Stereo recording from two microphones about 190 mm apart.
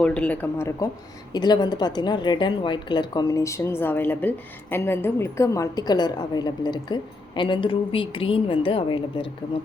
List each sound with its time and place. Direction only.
0.0 s a woman's voice: 5° left (ahead or behind); by 9.3 s 30° left (ahead or behind)